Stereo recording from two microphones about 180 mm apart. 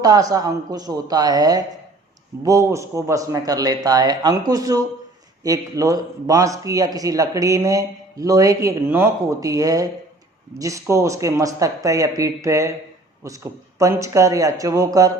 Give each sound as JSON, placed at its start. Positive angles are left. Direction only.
{"t": 0.0, "sound": "a man's voice", "side_deg": -20}